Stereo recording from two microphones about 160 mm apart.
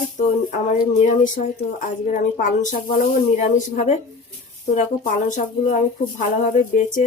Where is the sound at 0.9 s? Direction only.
45° left (ahead or behind).